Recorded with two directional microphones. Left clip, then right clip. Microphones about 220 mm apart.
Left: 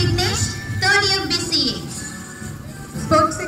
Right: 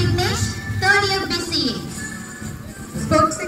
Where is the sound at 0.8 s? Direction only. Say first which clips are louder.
Even; 20° right (ahead or behind).